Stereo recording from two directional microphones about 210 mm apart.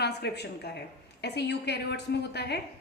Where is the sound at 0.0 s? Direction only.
50° left (ahead or behind).